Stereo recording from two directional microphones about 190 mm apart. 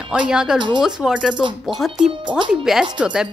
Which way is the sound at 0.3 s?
5° right (ahead or behind).